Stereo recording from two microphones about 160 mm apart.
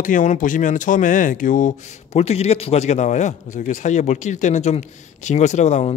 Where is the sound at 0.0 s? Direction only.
50° left (ahead or behind).